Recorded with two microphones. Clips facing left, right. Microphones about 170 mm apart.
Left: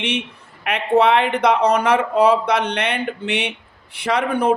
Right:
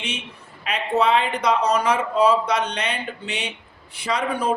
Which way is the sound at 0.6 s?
60° left (ahead or behind).